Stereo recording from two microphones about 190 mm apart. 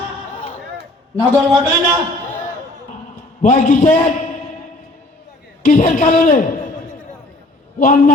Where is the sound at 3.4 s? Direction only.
40° left (ahead or behind).